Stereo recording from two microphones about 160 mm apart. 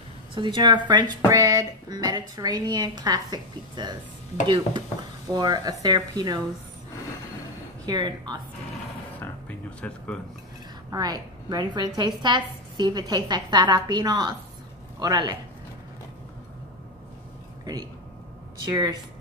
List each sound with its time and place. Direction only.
0.3 s speech: 30° right (ahead or behind)
5.3 s speech: 25° right (ahead or behind)
7.8 s a woman's voice: 25° right (ahead or behind)
9.8 s speech: 5° left (ahead or behind)
10.9 s speech: 25° right (ahead or behind)
18.7 s speech: 25° right (ahead or behind)